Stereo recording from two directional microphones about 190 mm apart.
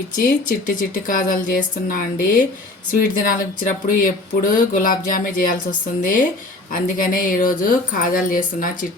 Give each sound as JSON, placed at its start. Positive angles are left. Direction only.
{"t": 0.2, "sound": "speech", "side_deg": 50}